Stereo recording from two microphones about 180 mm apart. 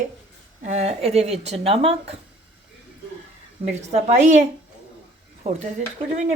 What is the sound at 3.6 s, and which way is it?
Speech, 40° right (ahead or behind).